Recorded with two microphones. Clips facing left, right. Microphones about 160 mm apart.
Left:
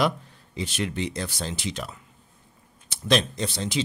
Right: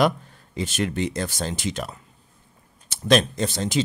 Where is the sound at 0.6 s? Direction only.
45° right (ahead or behind).